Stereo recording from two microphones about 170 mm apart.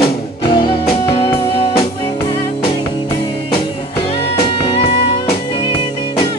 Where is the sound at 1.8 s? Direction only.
30° left (ahead or behind).